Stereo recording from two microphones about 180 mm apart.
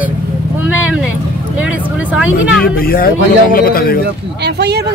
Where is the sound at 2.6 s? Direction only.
55° left (ahead or behind).